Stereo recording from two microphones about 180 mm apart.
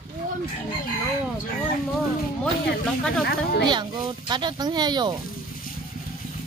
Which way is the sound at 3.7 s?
25° right (ahead or behind).